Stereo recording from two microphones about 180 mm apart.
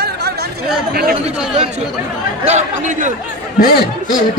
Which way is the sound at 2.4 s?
40° right (ahead or behind).